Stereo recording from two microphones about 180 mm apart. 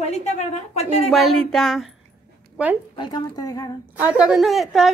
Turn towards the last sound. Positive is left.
turn(degrees=0)  # may be behind; listen again after turning